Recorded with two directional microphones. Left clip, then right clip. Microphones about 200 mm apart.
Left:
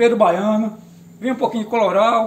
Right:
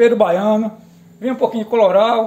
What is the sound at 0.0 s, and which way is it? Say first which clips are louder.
A man's voice: right 2 dB; 30° right (ahead or behind).